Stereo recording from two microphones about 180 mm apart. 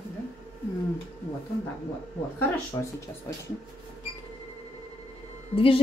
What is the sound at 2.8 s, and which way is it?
Speech, 20° left (ahead or behind).